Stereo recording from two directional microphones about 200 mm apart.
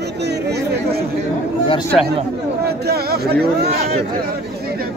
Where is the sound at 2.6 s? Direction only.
50° right (ahead or behind).